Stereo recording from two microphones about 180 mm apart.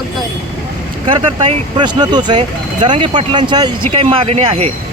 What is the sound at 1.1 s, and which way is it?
Speech, 30° right (ahead or behind).